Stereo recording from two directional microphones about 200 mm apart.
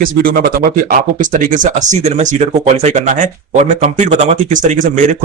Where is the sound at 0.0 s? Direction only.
45° right (ahead or behind).